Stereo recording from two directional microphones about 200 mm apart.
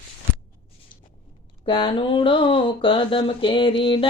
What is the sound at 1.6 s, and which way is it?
Speech, 25° left (ahead or behind).